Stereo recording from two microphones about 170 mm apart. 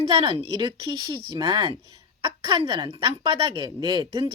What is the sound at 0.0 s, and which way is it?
Speech, 30° right (ahead or behind).